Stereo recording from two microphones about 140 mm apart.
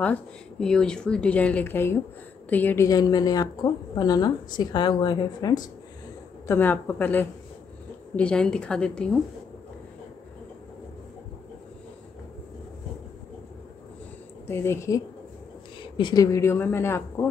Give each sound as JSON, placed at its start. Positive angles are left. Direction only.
{"t": 0.0, "sound": "speech", "side_deg": 10}
{"t": 2.9, "sound": "a woman's voice", "side_deg": 30}
{"t": 6.4, "sound": "speech", "side_deg": 15}
{"t": 14.5, "sound": "speech", "side_deg": 15}
{"t": 15.8, "sound": "a woman's voice", "side_deg": 35}